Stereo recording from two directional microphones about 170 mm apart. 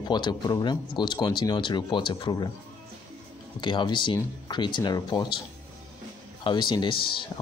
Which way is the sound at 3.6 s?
30° left (ahead or behind).